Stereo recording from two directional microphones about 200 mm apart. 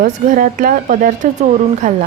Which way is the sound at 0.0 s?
40° right (ahead or behind).